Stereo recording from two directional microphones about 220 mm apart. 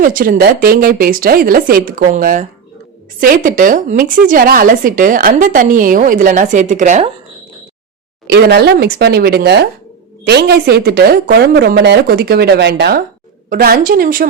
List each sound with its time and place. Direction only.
0.0 s speech: 40° right (ahead or behind)
8.3 s a woman's voice: 50° right (ahead or behind)